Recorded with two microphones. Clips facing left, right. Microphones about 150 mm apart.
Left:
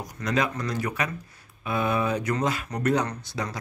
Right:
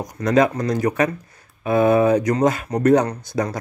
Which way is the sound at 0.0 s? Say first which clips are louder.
Right 9 dB; 45° right (ahead or behind).